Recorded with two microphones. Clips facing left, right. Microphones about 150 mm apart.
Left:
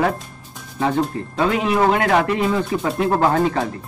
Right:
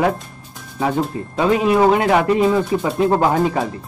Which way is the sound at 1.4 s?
20° right (ahead or behind).